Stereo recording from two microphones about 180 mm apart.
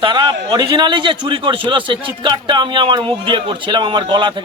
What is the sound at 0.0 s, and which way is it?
A man's voice, 25° right (ahead or behind).